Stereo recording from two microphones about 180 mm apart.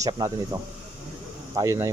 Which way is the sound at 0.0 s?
20° right (ahead or behind).